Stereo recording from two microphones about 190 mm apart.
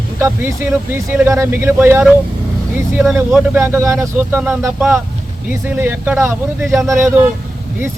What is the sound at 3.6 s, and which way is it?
Speech, 15° right (ahead or behind).